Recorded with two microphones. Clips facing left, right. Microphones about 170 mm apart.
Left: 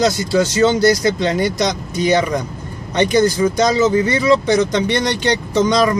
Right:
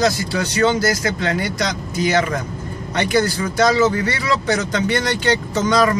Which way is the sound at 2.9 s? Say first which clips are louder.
Left 4 dB; 20° left (ahead or behind).